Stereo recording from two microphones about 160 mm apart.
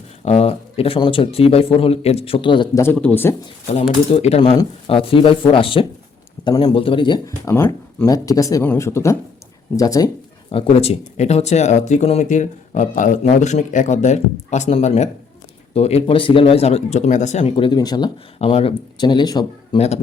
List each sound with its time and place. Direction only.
0.3 s speech: 40° left (ahead or behind)
2.7 s speech: 15° left (ahead or behind)
3.7 s speech: 40° left (ahead or behind); by 10.1 s 20° left (ahead or behind)
10.5 s speech: 40° left (ahead or behind)
17.4 s speech: 35° left (ahead or behind)
18.3 s speech: 35° left (ahead or behind)